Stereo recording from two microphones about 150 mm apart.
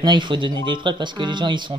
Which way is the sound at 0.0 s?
30° right (ahead or behind).